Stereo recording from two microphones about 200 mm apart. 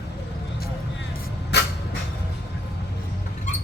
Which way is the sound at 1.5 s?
55° left (ahead or behind).